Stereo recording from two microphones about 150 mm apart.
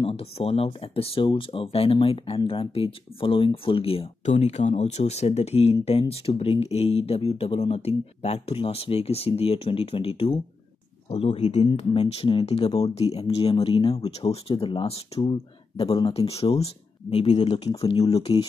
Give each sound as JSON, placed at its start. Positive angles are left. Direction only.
{"t": 0.0, "sound": "speech", "side_deg": 40}